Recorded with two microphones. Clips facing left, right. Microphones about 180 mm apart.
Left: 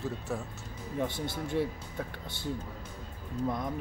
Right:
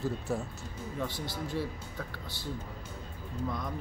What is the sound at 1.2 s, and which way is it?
Speech, 25° left (ahead or behind).